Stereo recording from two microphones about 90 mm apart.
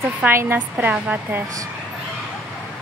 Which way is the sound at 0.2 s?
25° right (ahead or behind).